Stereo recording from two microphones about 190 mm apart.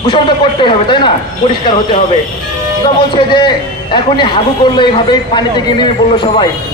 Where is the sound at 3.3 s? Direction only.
25° left (ahead or behind).